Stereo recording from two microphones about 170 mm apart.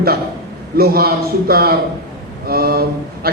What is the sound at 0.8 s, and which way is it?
A man's voice, 65° right (ahead or behind).